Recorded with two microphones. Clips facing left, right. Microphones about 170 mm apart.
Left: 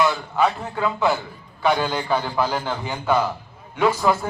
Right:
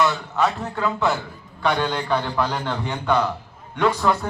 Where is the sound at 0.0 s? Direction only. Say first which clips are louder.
Left 1 dB; 5° left (ahead or behind).